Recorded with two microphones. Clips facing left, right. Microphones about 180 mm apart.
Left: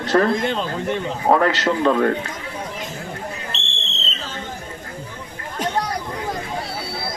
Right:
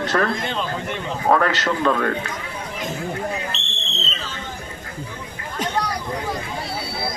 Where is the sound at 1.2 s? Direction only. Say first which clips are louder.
Left 2 dB; 25° left (ahead or behind).